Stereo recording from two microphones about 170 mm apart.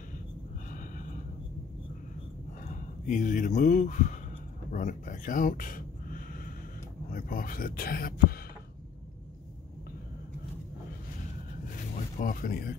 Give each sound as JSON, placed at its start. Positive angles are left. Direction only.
{"t": 0.7, "sound": "a sound", "side_deg": 50}
{"t": 2.6, "sound": "speech", "side_deg": 50}
{"t": 12.2, "sound": "speech", "side_deg": 55}